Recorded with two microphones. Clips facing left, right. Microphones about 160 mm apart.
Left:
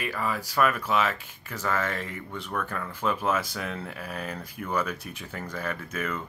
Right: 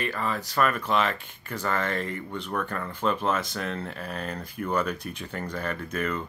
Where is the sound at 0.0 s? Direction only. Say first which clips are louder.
Right 1 dB; 10° left (ahead or behind).